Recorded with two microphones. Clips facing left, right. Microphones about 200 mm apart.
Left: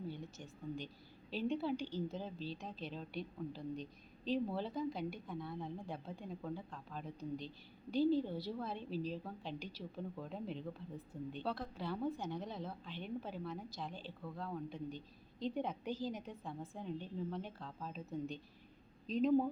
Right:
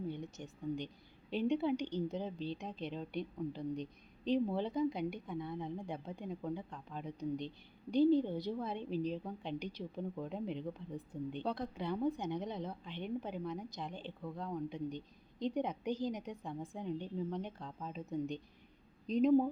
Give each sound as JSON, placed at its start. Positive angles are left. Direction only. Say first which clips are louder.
{"t": 0.1, "sound": "a woman's voice", "louder": "right 4 dB", "side_deg": -20}